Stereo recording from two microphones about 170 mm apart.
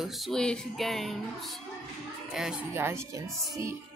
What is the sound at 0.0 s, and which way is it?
Music, centre (ahead or behind).